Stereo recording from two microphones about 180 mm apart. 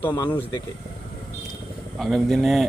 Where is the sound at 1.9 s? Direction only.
Centre (ahead or behind).